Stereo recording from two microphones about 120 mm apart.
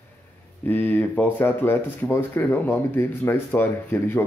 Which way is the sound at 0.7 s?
15° left (ahead or behind).